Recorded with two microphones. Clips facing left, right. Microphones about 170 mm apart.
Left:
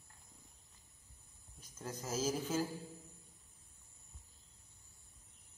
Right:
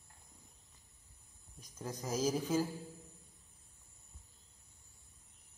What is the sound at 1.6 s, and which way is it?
Speech, 15° right (ahead or behind).